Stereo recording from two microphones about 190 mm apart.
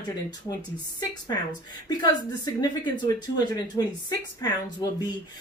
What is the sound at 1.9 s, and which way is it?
A woman's voice, 20° left (ahead or behind).